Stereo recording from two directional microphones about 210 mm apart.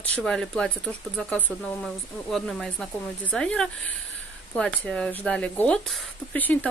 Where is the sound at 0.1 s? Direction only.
Centre (ahead or behind).